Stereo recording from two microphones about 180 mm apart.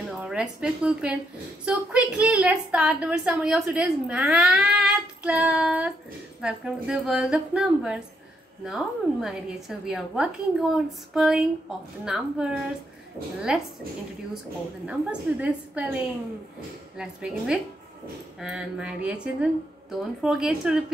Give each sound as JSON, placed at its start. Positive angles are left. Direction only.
{"t": 0.2, "sound": "a woman's voice", "side_deg": -5}
{"t": 14.9, "sound": "a woman's voice", "side_deg": -5}
{"t": 16.9, "sound": "a woman's voice", "side_deg": -5}